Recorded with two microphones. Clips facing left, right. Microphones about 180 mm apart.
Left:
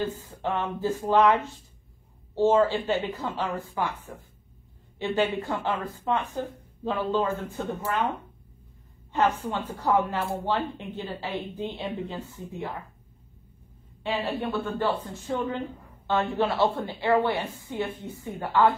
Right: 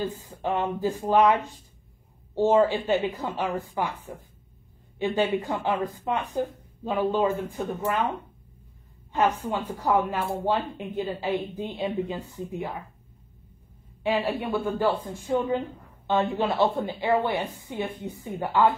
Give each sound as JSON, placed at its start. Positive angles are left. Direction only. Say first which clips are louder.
{"t": 0.0, "sound": "speech", "louder": "even", "side_deg": -15}
{"t": 14.0, "sound": "speech", "louder": "right 3 dB", "side_deg": -10}